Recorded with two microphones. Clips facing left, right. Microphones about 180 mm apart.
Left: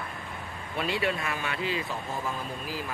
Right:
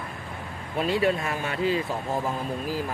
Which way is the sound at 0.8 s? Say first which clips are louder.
Right 6 dB; 40° right (ahead or behind).